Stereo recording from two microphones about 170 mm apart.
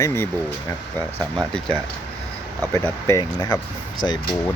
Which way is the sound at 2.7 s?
15° left (ahead or behind).